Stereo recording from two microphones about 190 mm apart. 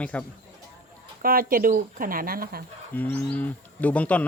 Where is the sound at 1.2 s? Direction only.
50° right (ahead or behind).